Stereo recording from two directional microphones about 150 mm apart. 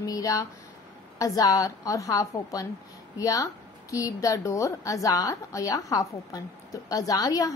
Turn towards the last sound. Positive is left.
turn(degrees=25)  # may be behind; listen again after turning